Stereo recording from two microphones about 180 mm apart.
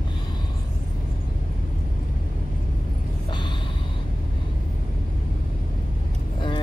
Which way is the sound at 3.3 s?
25° left (ahead or behind).